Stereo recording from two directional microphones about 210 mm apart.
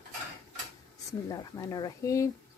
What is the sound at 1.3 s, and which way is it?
Speech, 15° left (ahead or behind).